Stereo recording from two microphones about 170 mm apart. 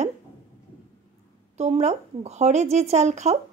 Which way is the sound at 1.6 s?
40° right (ahead or behind).